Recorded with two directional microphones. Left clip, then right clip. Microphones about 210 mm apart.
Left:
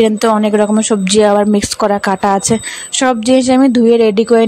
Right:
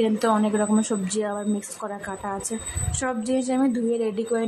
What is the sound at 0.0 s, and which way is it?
Speech, 35° left (ahead or behind).